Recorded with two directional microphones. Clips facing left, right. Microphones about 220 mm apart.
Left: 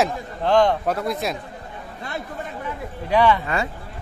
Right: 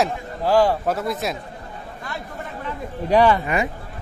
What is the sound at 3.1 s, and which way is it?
Speech, 40° right (ahead or behind).